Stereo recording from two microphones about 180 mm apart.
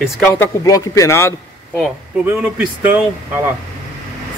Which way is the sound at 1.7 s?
10° right (ahead or behind).